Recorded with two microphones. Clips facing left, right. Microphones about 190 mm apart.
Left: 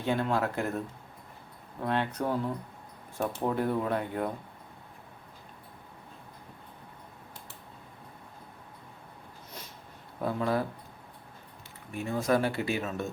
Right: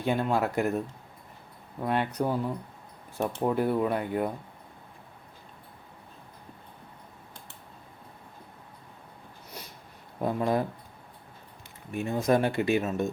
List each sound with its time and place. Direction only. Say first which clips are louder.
0.0 s speech: right 2 dB; 10° right (ahead or behind)
1.8 s speech: right 2 dB; 10° right (ahead or behind)
10.2 s speech: right 2 dB; 20° right (ahead or behind)
11.9 s speech: right 3 dB; 20° right (ahead or behind)